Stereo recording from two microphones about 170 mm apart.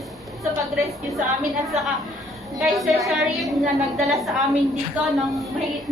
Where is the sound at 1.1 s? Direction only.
Centre (ahead or behind).